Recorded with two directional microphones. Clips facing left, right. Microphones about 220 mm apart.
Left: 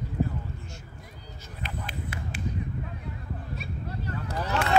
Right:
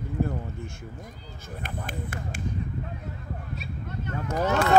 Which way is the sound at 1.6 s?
50° right (ahead or behind).